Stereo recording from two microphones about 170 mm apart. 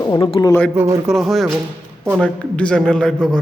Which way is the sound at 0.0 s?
25° left (ahead or behind).